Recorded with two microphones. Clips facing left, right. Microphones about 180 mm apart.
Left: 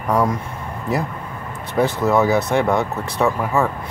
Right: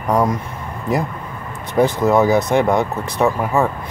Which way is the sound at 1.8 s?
15° right (ahead or behind).